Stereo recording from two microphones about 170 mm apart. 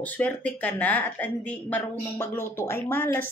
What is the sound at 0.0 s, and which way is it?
Speech, 10° left (ahead or behind).